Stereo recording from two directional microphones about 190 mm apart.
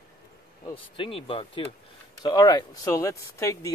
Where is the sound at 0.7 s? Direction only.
25° left (ahead or behind).